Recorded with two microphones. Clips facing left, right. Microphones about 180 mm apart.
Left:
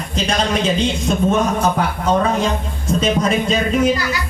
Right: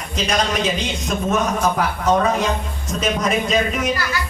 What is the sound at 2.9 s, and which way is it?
Speech, 30° left (ahead or behind).